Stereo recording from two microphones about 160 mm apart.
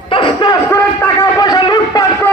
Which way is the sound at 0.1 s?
30° left (ahead or behind).